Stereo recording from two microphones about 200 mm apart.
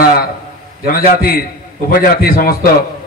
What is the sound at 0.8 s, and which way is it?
A man's voice, 50° left (ahead or behind).